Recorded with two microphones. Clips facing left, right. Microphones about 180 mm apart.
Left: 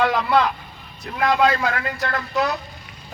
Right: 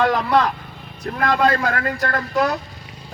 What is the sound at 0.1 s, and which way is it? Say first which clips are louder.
Vehicle: right 1 dB; 45° right (ahead or behind).